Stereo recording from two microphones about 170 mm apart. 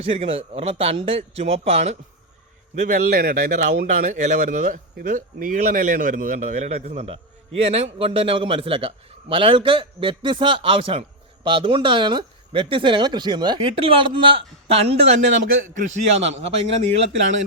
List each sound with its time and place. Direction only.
0.0 s a man's voice: 35° right (ahead or behind)